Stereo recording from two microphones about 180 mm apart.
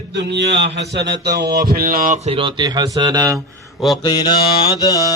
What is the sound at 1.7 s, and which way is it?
Speech, 55° right (ahead or behind).